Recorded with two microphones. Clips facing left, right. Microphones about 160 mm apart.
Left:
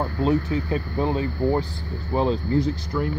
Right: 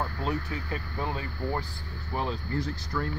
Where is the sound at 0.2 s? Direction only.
25° left (ahead or behind).